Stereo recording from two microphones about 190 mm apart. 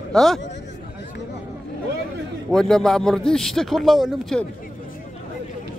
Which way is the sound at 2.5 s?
Centre (ahead or behind).